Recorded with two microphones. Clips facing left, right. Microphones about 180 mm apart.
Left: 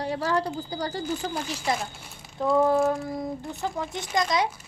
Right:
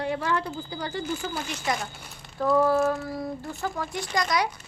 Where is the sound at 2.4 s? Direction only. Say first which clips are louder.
Even; 20° left (ahead or behind).